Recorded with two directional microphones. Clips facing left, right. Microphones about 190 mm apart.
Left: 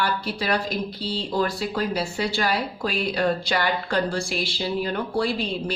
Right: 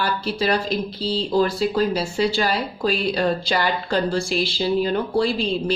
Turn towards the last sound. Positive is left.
turn(degrees=-25)  # may be behind; listen again after turning